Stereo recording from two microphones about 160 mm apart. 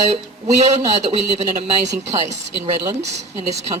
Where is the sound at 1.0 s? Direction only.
45° right (ahead or behind).